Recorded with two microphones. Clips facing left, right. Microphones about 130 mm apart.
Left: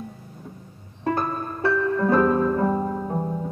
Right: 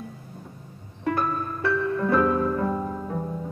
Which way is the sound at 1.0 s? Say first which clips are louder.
Left 1 dB; 35° left (ahead or behind).